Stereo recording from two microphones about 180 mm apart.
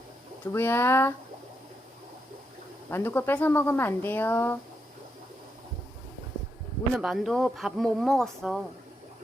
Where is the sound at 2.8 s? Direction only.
10° left (ahead or behind).